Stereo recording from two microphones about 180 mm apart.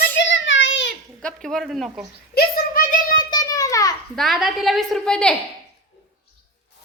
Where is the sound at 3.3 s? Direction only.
20° left (ahead or behind).